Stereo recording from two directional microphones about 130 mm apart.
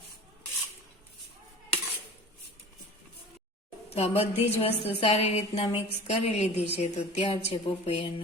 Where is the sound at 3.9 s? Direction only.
55° left (ahead or behind).